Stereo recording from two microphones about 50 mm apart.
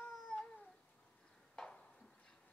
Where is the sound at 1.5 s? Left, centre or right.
Centre.